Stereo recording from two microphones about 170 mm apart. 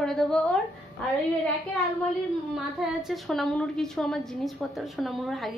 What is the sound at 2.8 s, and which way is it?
A woman's voice, centre (ahead or behind).